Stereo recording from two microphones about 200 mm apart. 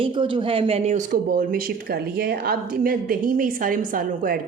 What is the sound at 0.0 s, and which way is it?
A woman's voice, 25° right (ahead or behind).